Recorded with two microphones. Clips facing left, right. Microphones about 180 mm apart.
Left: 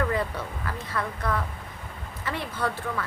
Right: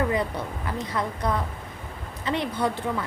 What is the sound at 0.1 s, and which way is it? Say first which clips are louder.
Speech: right 2 dB; 15° right (ahead or behind).